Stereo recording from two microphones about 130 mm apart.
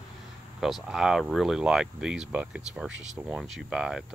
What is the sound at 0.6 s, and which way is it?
Speech, centre (ahead or behind).